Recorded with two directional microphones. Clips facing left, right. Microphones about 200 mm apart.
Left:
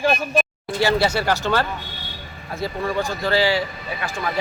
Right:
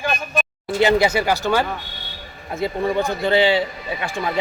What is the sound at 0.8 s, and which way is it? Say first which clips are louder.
A man's voice: right 3 dB; 15° right (ahead or behind).